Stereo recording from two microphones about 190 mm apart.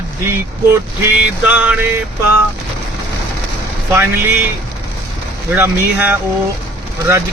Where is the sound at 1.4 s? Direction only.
5° right (ahead or behind).